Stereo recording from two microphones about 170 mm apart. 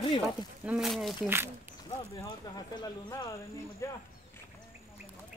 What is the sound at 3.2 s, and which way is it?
Speech, 15° left (ahead or behind).